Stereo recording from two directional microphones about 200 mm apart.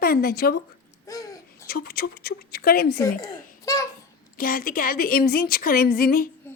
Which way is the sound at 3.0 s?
20° left (ahead or behind).